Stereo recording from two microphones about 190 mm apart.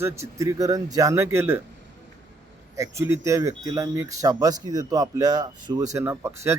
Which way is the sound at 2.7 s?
15° right (ahead or behind).